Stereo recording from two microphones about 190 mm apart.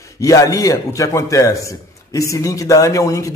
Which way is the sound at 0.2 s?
15° left (ahead or behind).